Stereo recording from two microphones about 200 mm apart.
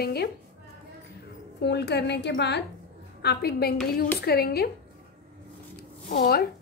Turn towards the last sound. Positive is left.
turn(degrees=50)  # may be behind; listen again after turning